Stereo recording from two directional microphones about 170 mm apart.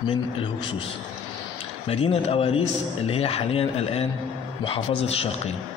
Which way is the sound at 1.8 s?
35° left (ahead or behind).